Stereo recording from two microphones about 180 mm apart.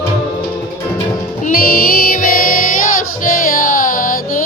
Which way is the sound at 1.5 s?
55° left (ahead or behind).